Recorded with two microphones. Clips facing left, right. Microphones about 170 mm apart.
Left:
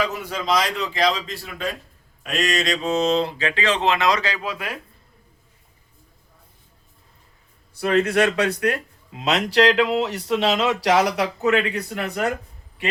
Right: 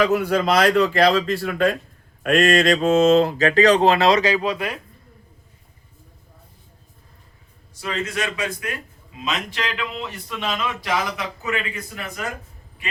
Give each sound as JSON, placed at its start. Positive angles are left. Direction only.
{"t": 0.0, "sound": "speech", "side_deg": -55}
{"t": 2.2, "sound": "a sound", "side_deg": -55}
{"t": 4.4, "sound": "speech", "side_deg": 5}
{"t": 7.8, "sound": "speech", "side_deg": 60}